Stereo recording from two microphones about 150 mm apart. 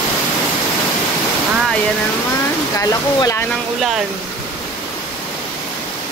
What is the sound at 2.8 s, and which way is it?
Speech, 20° left (ahead or behind).